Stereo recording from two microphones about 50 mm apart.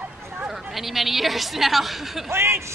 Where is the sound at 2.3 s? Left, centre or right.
Right.